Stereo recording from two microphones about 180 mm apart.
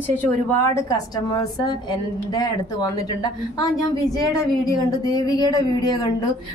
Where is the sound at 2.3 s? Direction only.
20° left (ahead or behind).